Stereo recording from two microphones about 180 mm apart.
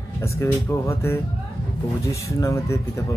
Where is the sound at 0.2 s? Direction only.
15° left (ahead or behind).